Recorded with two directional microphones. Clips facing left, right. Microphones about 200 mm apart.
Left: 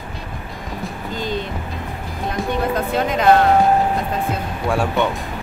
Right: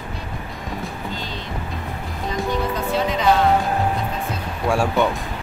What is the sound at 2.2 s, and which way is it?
Music, 55° left (ahead or behind).